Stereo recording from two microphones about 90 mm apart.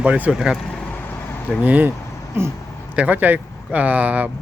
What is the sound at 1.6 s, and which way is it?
Speech, 20° right (ahead or behind).